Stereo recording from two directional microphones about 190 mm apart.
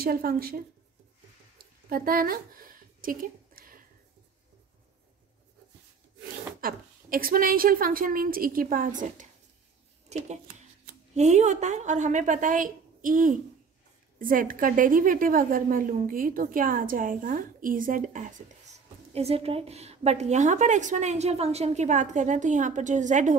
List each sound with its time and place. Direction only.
0.0 s a woman's voice: 50° right (ahead or behind)
1.6 s a sound: 50° right (ahead or behind)
6.6 s a woman's voice: 50° right (ahead or behind)